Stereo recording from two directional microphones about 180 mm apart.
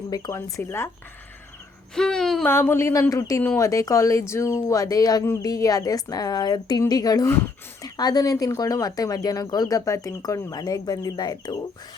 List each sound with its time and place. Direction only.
0.1 s speech: 20° left (ahead or behind)
2.0 s speech: 5° left (ahead or behind)
2.5 s speech: 15° left (ahead or behind)